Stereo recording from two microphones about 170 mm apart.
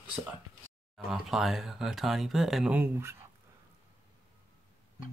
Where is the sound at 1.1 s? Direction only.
Centre (ahead or behind).